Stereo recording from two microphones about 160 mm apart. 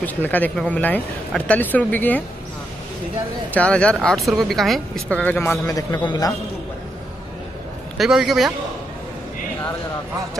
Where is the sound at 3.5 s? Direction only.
5° left (ahead or behind); by 6.3 s 20° left (ahead or behind).